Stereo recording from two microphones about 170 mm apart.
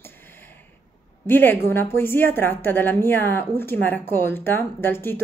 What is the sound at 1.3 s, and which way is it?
A woman's voice, 10° left (ahead or behind).